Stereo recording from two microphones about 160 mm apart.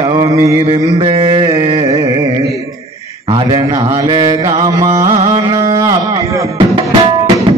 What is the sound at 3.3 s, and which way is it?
Mantra, 25° right (ahead or behind).